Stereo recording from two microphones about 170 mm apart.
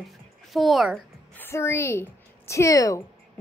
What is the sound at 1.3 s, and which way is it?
A woman's voice, 15° left (ahead or behind).